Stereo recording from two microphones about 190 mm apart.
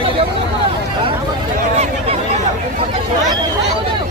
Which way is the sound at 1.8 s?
35° right (ahead or behind).